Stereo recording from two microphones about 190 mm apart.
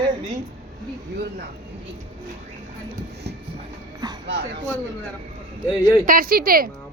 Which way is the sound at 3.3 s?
60° right (ahead or behind).